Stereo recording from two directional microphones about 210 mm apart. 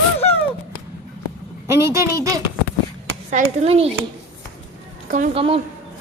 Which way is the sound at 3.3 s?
30° right (ahead or behind).